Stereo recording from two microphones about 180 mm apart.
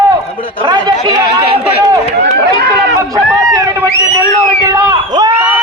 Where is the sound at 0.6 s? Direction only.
25° right (ahead or behind).